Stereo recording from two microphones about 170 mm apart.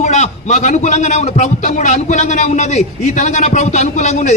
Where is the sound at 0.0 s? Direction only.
40° left (ahead or behind).